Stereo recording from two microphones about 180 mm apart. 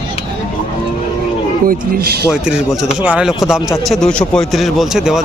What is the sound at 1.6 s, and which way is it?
Speech, 60° right (ahead or behind).